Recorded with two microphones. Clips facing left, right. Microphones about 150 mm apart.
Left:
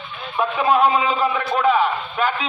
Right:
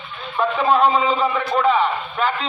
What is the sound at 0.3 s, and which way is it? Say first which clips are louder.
A man's voice: even; 5° left (ahead or behind).